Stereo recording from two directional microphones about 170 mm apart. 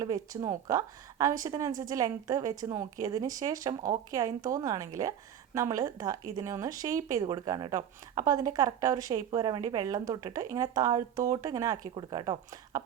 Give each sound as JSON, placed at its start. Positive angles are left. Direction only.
{"t": 0.0, "sound": "speech", "side_deg": -20}